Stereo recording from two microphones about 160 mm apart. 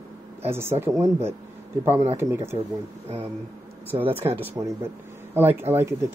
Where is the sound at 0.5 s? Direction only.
15° right (ahead or behind).